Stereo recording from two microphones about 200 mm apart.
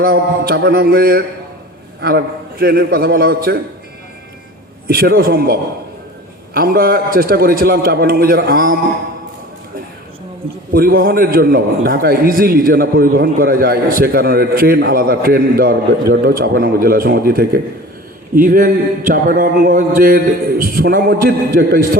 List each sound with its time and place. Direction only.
0.0 s a man's voice: 50° right (ahead or behind)
4.9 s a man's voice: 50° right (ahead or behind)
10.7 s a man's voice: 45° right (ahead or behind)